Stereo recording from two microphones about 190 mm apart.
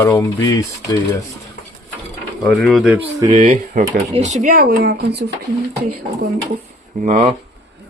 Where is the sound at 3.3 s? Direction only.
35° right (ahead or behind); by 5.2 s 60° right (ahead or behind).